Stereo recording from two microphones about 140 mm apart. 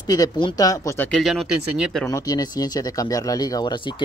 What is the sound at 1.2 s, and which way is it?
Speech, centre (ahead or behind).